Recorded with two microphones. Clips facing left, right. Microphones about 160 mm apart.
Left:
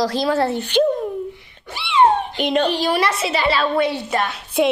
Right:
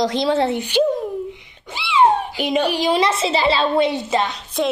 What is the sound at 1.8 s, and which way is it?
Cat, 5° right (ahead or behind).